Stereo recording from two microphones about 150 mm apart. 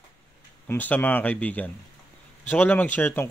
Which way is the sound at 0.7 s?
10° left (ahead or behind).